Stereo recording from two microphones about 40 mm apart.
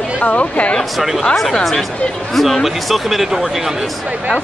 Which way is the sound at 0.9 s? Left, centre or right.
Centre.